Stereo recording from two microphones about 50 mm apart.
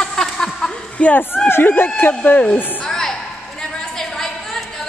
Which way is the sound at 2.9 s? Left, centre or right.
Centre.